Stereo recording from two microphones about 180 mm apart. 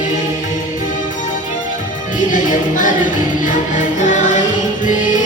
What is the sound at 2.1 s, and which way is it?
Music, 45° left (ahead or behind).